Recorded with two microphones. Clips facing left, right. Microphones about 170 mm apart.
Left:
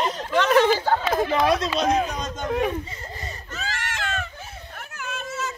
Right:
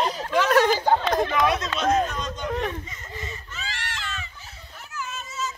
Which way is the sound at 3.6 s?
45° left (ahead or behind).